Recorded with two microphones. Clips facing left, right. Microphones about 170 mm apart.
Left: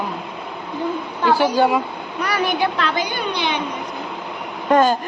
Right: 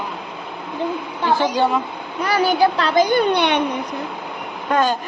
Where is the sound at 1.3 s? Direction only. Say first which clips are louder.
Left 2 dB; 10° left (ahead or behind).